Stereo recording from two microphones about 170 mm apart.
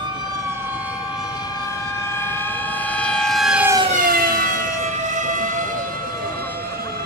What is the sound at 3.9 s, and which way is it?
Siren, 55° right (ahead or behind).